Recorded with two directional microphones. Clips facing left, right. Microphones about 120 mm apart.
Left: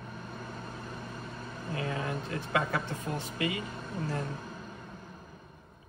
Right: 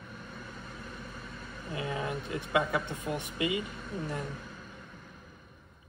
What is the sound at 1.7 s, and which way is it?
Speech, 20° right (ahead or behind).